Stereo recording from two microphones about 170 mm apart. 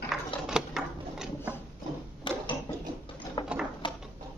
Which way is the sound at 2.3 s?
30° left (ahead or behind).